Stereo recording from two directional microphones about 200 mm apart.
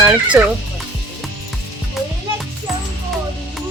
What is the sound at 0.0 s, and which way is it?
Speech, 10° right (ahead or behind).